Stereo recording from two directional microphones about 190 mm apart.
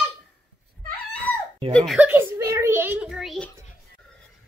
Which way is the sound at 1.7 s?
Centre (ahead or behind).